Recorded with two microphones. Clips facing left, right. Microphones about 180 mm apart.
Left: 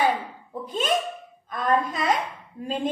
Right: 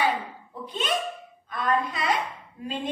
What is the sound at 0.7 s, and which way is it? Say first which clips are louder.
A woman's voice: left 3 dB; 45° left (ahead or behind).